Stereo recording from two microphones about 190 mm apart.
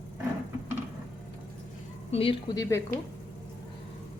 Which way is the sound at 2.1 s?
30° left (ahead or behind).